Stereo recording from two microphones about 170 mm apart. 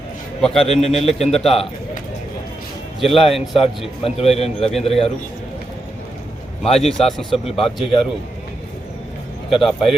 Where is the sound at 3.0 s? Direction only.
30° left (ahead or behind).